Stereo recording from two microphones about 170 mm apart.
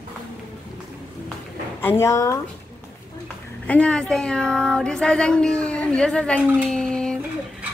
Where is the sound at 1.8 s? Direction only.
15° left (ahead or behind).